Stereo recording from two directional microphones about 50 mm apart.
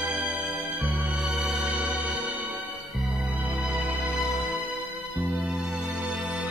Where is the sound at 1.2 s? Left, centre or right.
Centre; by 4.2 s right.